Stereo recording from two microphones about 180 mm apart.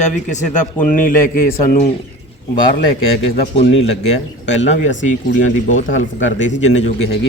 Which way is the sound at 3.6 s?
90° left.